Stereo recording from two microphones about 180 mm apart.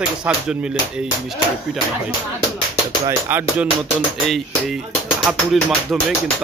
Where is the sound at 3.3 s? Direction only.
10° right (ahead or behind).